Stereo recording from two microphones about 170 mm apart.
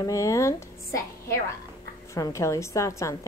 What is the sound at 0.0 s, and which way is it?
Speech, 20° left (ahead or behind).